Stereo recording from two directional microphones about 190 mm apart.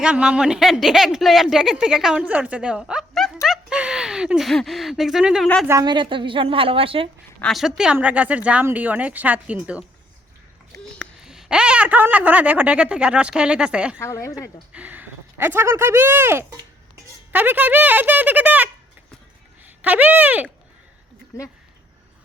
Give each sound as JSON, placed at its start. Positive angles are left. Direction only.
{"t": 0.0, "sound": "speech", "side_deg": -5}
{"t": 3.4, "sound": "a sound", "side_deg": -5}
{"t": 5.6, "sound": "a woman's voice", "side_deg": -20}
{"t": 7.4, "sound": "speech", "side_deg": 0}
{"t": 10.9, "sound": "speech", "side_deg": 0}
{"t": 14.0, "sound": "a woman's voice", "side_deg": 15}
{"t": 14.7, "sound": "speech", "side_deg": -10}